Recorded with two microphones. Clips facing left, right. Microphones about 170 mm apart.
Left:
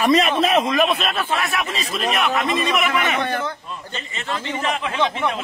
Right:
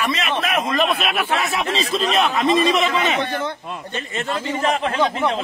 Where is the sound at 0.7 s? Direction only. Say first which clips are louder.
Left 1 dB; 5° left (ahead or behind); by 3.2 s 25° right (ahead or behind).